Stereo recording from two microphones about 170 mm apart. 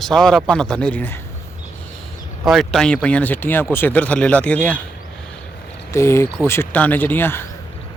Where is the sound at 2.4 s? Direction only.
Centre (ahead or behind).